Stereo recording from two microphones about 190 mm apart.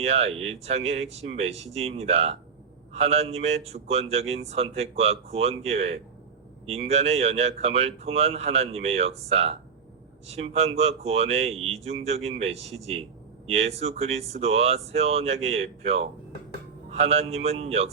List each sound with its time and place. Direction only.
0.0 s speech: 35° right (ahead or behind)